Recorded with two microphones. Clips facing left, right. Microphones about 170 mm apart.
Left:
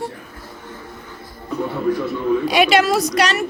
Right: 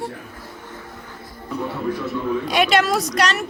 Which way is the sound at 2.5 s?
5° left (ahead or behind).